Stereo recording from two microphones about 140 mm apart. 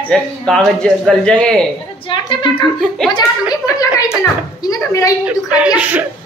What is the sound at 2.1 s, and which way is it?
Speech, 35° left (ahead or behind).